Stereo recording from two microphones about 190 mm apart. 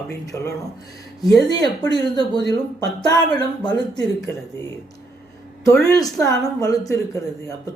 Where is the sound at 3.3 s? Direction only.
25° left (ahead or behind).